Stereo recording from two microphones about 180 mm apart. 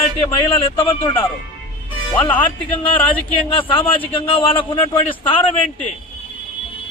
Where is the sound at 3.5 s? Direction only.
30° left (ahead or behind).